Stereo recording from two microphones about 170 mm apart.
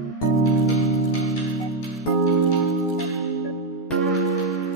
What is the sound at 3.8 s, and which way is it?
Music, centre (ahead or behind).